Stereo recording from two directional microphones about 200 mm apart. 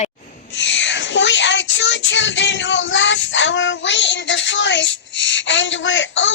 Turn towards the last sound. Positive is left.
turn(degrees=65)  # may be behind; listen again after turning